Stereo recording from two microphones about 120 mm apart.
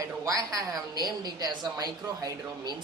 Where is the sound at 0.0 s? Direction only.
30° right (ahead or behind).